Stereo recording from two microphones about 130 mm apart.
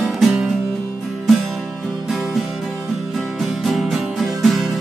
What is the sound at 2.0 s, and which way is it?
Music, centre (ahead or behind).